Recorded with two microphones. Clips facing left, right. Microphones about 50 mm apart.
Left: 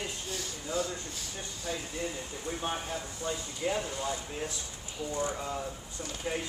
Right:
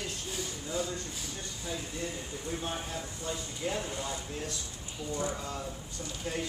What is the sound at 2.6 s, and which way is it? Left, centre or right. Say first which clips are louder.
Speech: left 2 dB; centre.